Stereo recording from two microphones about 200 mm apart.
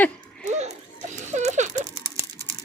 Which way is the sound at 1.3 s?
35° right (ahead or behind).